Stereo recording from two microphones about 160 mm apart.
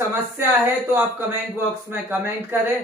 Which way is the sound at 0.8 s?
15° right (ahead or behind).